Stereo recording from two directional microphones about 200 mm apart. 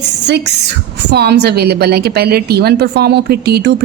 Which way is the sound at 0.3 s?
55° right (ahead or behind).